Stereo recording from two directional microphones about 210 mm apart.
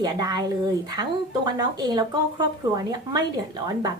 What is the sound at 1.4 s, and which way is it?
A woman's voice, 20° right (ahead or behind).